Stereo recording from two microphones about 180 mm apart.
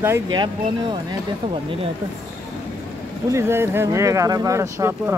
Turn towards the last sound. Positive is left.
turn(degrees=-15)  # may be behind; listen again after turning